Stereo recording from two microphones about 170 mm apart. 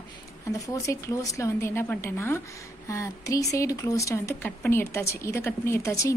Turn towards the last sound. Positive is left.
turn(degrees=20)  # may be behind; listen again after turning